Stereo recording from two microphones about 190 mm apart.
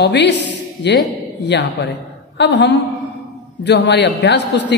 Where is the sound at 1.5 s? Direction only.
65° left (ahead or behind).